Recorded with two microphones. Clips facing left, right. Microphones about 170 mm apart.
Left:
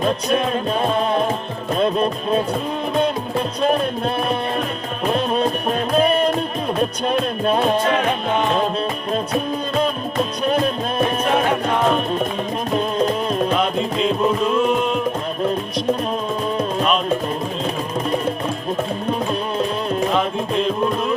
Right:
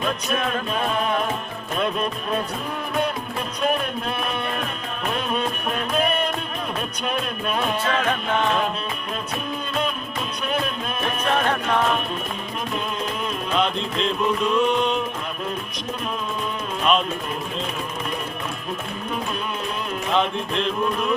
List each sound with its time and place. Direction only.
0.0 s music: 30° left (ahead or behind)
3.6 s music: 35° left (ahead or behind)
9.8 s music: 35° left (ahead or behind)
12.7 s music: 35° left (ahead or behind)
13.7 s music: 5° left (ahead or behind)